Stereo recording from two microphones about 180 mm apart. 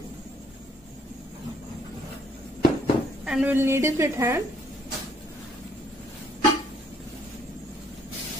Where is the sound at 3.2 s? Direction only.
5° right (ahead or behind).